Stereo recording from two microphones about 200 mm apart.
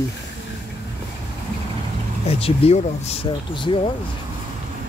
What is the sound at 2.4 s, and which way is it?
Speech, 30° left (ahead or behind).